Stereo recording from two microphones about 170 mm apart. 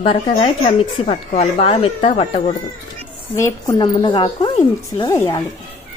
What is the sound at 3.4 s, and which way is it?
A woman's voice, 20° left (ahead or behind).